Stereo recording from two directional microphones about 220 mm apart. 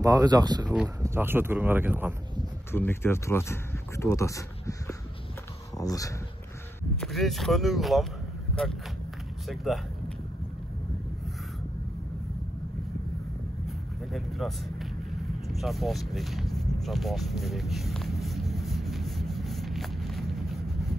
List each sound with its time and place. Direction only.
0.0 s speech: 15° right (ahead or behind)
2.7 s speech: 10° left (ahead or behind)
7.0 s speech: centre (ahead or behind)
13.7 s vehicle: centre (ahead or behind)
15.6 s a sound: centre (ahead or behind)